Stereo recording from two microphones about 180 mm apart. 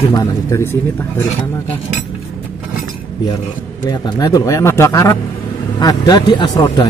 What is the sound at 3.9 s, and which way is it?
A man's voice, 20° left (ahead or behind).